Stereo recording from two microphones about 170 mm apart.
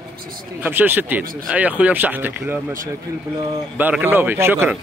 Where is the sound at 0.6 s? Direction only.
10° right (ahead or behind).